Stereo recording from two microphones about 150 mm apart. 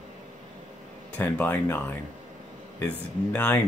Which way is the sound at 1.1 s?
10° left (ahead or behind).